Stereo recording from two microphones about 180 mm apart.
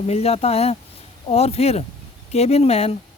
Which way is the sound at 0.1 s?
35° left (ahead or behind).